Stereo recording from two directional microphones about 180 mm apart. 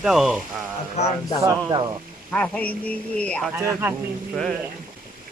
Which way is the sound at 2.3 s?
10° left (ahead or behind).